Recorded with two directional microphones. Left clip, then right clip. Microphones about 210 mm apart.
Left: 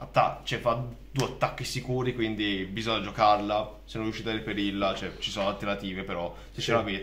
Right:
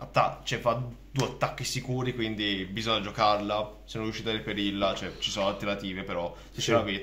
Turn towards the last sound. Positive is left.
turn(degrees=-10)  # may be behind; listen again after turning